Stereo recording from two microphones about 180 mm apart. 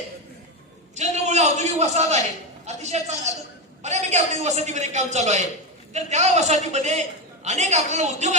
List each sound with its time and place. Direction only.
0.9 s a man's voice: 40° right (ahead or behind)